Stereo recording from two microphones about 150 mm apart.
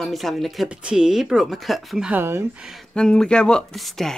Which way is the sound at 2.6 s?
Centre (ahead or behind).